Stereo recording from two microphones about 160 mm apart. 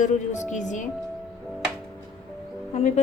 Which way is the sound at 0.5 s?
50° left (ahead or behind).